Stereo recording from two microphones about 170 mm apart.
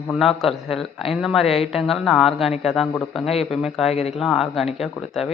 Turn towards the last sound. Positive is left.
turn(degrees=0)  # may be behind; listen again after turning